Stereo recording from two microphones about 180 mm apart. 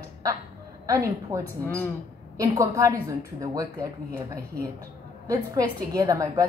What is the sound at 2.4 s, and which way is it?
A woman's voice, 20° right (ahead or behind).